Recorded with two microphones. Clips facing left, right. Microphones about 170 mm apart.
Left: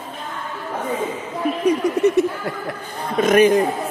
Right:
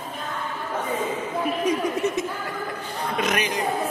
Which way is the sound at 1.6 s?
65° left (ahead or behind).